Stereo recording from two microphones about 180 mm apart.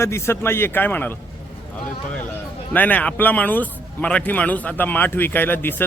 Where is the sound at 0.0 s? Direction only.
15° left (ahead or behind).